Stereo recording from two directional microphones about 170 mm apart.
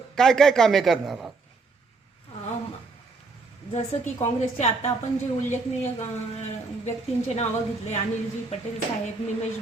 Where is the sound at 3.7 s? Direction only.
40° left (ahead or behind).